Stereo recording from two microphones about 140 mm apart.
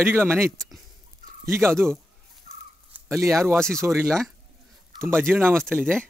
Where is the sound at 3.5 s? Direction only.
5° left (ahead or behind).